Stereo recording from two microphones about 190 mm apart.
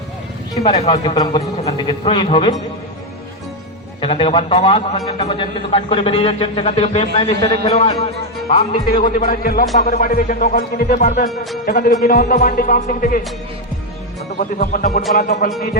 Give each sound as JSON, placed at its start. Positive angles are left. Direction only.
{"t": 0.5, "sound": "a man's voice", "side_deg": 20}
{"t": 4.0, "sound": "a man's voice", "side_deg": 30}
{"t": 8.9, "sound": "speech", "side_deg": 45}
{"t": 9.7, "sound": "speech", "side_deg": 40}
{"t": 14.3, "sound": "speech", "side_deg": 50}